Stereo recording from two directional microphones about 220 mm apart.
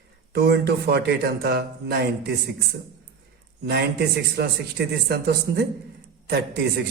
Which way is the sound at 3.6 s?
50° right (ahead or behind).